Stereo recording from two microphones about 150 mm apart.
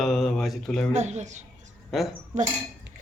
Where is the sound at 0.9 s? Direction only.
50° right (ahead or behind).